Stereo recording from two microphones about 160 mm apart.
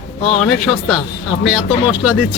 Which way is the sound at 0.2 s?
35° left (ahead or behind).